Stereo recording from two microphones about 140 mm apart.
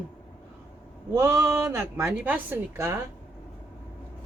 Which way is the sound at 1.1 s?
20° right (ahead or behind).